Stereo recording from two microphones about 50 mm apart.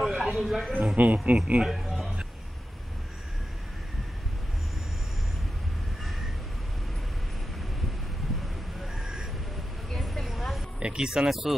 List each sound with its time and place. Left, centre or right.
0.0 s speech: centre
0.9 s speech: right
1.7 s a sound: centre
8.9 s vehicle: centre
9.8 s a sound: centre
10.8 s speech: centre